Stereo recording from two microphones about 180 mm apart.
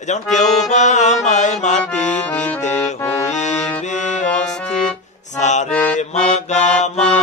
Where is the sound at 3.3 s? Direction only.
40° left (ahead or behind).